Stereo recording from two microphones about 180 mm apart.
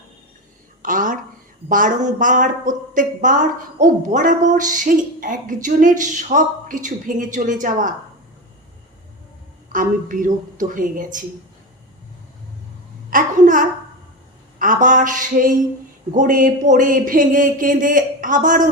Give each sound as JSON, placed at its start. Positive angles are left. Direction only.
{"t": 0.8, "sound": "a sound", "side_deg": -50}
{"t": 1.7, "sound": "a woman's voice", "side_deg": -45}
{"t": 9.7, "sound": "a woman's voice", "side_deg": -45}
{"t": 13.1, "sound": "a child's voice", "side_deg": -45}